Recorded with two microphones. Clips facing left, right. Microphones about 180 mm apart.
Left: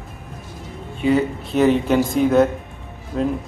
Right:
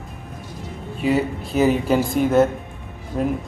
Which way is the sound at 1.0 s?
5° right (ahead or behind).